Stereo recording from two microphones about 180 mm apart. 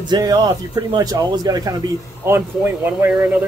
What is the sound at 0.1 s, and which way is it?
Speech, 20° right (ahead or behind).